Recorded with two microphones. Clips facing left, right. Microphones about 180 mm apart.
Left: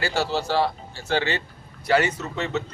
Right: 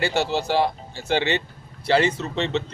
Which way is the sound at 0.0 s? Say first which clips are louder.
Right 2 dB; 20° right (ahead or behind).